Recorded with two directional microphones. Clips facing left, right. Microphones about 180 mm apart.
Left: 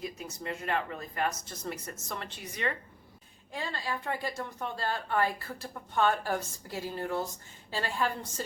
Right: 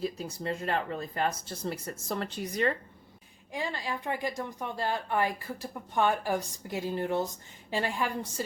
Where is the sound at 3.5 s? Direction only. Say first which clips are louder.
Right 2 dB; 15° right (ahead or behind).